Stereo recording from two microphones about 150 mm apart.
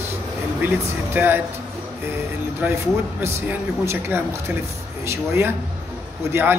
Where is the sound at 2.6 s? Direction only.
10° right (ahead or behind).